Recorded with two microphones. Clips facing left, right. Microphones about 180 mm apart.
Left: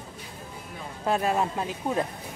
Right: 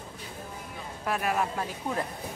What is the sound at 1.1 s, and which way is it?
Speech, 25° left (ahead or behind).